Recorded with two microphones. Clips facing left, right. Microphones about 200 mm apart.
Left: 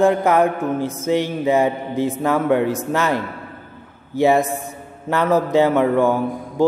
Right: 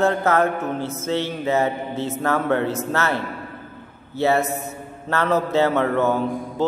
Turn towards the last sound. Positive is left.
turn(degrees=10)  # may be behind; listen again after turning